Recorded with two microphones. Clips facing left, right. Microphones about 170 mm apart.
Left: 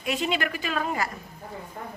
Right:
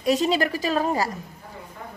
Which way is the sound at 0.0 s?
40° right (ahead or behind).